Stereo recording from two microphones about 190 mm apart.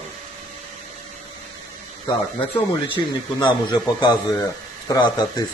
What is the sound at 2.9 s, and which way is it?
A man's voice, 25° left (ahead or behind).